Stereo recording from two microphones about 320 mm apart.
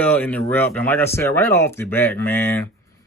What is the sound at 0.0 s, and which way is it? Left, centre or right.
Speech, centre.